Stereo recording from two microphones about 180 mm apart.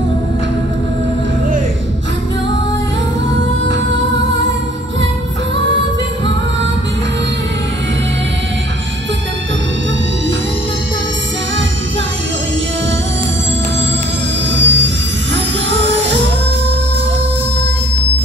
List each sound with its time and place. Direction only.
14.5 s music: 85° right